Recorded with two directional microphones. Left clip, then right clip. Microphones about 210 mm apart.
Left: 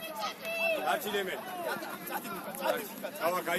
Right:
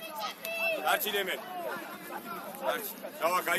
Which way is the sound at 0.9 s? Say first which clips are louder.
Right 2 dB; 35° right (ahead or behind).